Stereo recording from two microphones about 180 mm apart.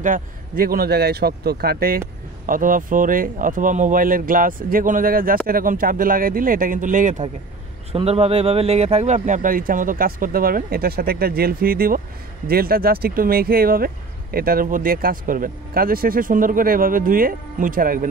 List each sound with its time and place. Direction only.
0.0 s speech: 50° right (ahead or behind)
7.9 s speech: 35° right (ahead or behind); by 18.0 s 50° right (ahead or behind)